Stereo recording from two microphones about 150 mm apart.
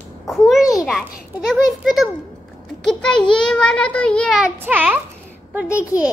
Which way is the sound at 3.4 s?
5° left (ahead or behind).